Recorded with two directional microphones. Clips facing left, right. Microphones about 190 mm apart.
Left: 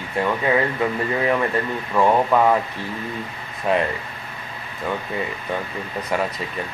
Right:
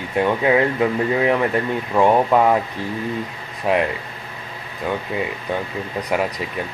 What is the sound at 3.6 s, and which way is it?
Speech, 10° right (ahead or behind).